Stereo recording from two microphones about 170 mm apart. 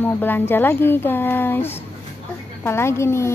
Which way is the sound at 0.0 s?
10° left (ahead or behind).